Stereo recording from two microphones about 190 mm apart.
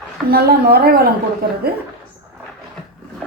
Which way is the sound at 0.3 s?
50° right (ahead or behind).